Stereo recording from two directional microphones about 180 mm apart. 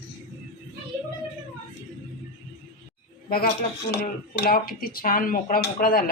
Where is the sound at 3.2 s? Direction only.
55° left (ahead or behind).